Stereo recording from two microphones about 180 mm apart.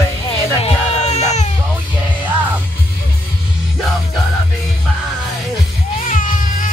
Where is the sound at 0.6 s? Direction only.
35° left (ahead or behind).